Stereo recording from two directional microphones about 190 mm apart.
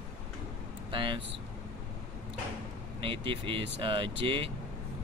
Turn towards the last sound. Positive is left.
turn(degrees=-25)  # may be behind; listen again after turning